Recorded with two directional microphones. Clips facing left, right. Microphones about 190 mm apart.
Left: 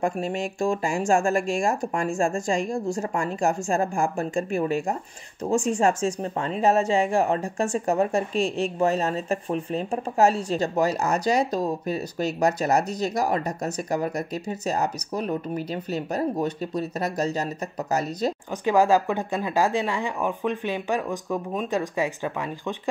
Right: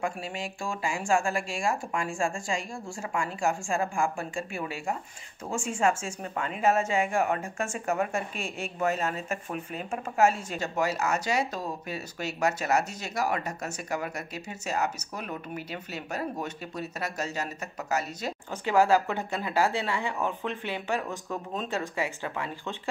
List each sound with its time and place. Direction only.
0.0 s speech: 45° left (ahead or behind)
18.7 s speech: 15° left (ahead or behind)